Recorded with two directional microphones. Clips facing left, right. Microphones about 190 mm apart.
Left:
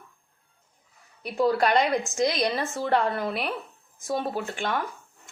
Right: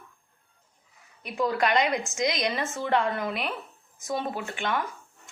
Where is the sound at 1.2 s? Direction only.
35° left (ahead or behind).